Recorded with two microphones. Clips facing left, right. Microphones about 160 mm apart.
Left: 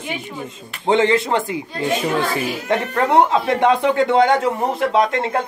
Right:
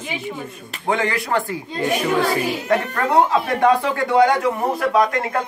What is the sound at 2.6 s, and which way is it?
Speech, 20° left (ahead or behind).